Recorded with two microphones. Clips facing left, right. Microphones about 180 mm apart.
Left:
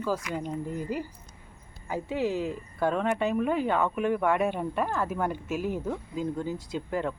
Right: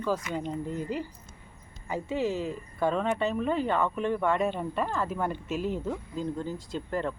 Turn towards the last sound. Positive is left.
turn(degrees=10)  # may be behind; listen again after turning